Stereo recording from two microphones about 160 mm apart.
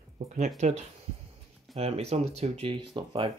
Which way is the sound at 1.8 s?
40° right (ahead or behind).